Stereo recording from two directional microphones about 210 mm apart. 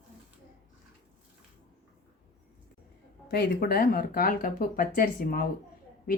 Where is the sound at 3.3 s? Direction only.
50° left (ahead or behind).